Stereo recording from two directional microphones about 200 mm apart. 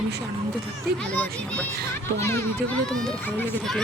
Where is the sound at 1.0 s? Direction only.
5° left (ahead or behind).